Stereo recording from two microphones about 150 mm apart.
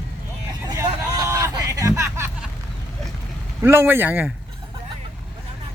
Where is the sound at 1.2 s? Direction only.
20° right (ahead or behind).